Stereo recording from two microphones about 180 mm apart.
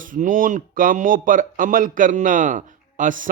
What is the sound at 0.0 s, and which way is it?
Speech, 50° right (ahead or behind).